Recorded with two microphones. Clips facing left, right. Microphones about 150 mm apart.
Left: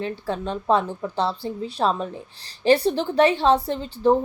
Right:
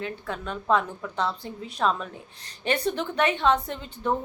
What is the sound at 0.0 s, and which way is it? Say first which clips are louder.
A woman's voice: left 6 dB; 30° left (ahead or behind).